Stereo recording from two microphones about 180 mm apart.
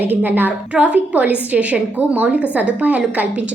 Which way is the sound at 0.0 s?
10° right (ahead or behind).